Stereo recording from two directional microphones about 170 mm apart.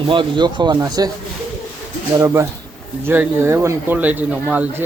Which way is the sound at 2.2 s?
15° right (ahead or behind).